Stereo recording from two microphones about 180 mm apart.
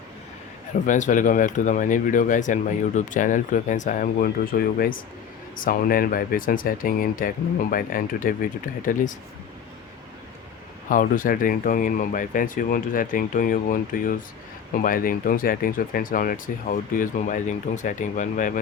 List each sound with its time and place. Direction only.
0.9 s speech: 45° left (ahead or behind)
10.8 s speech: 50° left (ahead or behind)